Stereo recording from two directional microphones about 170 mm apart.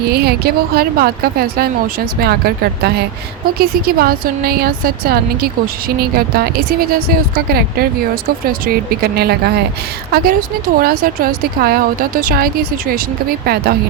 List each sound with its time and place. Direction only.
0.1 s speech: 65° right (ahead or behind)